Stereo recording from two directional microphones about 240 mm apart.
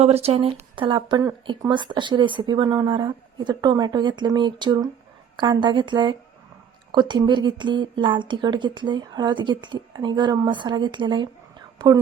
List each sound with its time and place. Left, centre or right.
0.0 s speech: right